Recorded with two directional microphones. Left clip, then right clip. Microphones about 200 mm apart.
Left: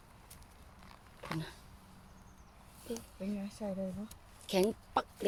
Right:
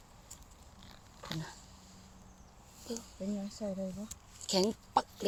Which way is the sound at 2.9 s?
5° right (ahead or behind).